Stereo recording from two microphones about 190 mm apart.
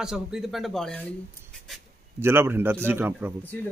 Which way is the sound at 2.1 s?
10° right (ahead or behind).